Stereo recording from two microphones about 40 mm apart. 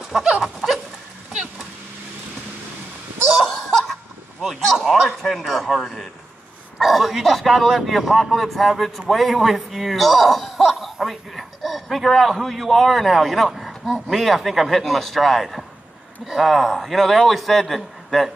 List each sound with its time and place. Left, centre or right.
3.4 s laughter: centre
4.4 s speech: centre
13.8 s speech: centre
14.1 s speech: centre